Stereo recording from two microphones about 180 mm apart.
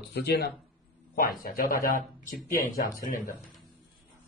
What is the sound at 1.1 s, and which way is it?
Speech, 55° left (ahead or behind).